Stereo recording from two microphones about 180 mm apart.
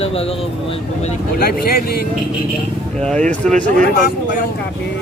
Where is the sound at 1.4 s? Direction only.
60° left (ahead or behind).